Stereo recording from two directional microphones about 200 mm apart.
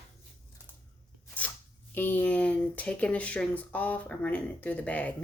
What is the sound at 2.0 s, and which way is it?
Speech, 10° left (ahead or behind).